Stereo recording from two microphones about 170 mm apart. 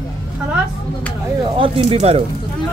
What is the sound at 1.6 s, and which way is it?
Speech, 35° right (ahead or behind).